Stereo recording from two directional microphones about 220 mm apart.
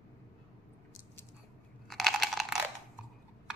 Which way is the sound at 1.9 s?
Centre (ahead or behind).